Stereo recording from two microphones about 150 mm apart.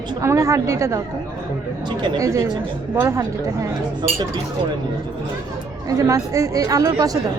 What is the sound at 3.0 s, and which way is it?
Speech, 20° right (ahead or behind).